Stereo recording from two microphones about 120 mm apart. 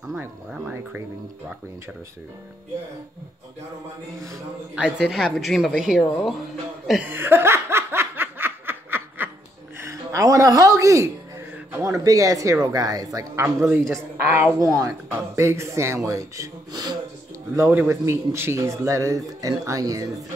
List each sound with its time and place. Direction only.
0.5 s speech: 10° right (ahead or behind)
4.7 s a woman's voice: 10° right (ahead or behind)
7.1 s snicker: 20° right (ahead or behind)
9.8 s a woman's voice: 25° right (ahead or behind)
14.6 s a man's voice: 30° right (ahead or behind)